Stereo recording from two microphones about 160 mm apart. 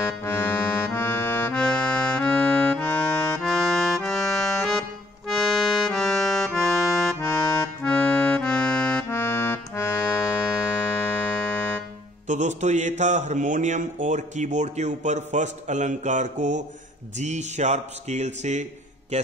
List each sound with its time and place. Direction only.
0.0 s accordion: 15° left (ahead or behind)
12.3 s speech: 50° right (ahead or behind)